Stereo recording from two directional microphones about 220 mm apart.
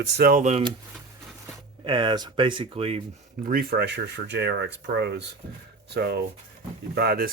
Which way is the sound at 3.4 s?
45° right (ahead or behind).